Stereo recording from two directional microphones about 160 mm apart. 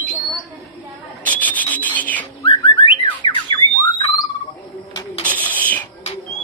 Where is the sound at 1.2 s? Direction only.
10° left (ahead or behind).